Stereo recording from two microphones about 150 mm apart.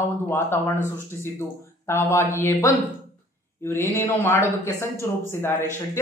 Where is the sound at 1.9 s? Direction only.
15° left (ahead or behind).